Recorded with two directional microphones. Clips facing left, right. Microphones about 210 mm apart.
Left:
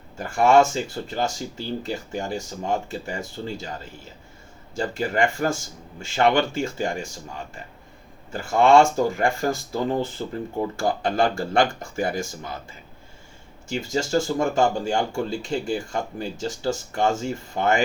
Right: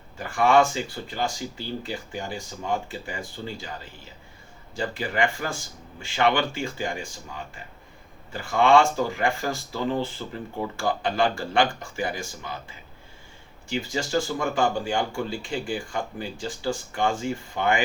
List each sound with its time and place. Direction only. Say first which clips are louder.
0.2 s speech: left 3 dB; 45° left (ahead or behind)
4.8 s speech: left 3 dB; 45° left (ahead or behind)
8.3 s speech: left 3 dB; 45° left (ahead or behind)
13.7 s speech: left 3 dB; 40° left (ahead or behind)